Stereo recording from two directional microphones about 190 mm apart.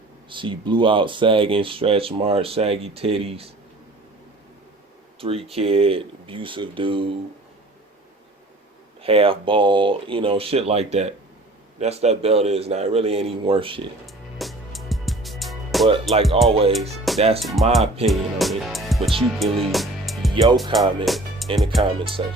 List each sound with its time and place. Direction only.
0.3 s speech: 25° right (ahead or behind)
5.2 s speech: 30° right (ahead or behind)
9.0 s a man's voice: 30° right (ahead or behind)
14.1 s music: centre (ahead or behind)
16.1 s speech: centre (ahead or behind)
16.5 s a man's voice: 30° right (ahead or behind)
17.4 s speech: centre (ahead or behind)
20.3 s speech: 25° right (ahead or behind)
21.0 s speech: centre (ahead or behind)
22.0 s speech: 25° right (ahead or behind)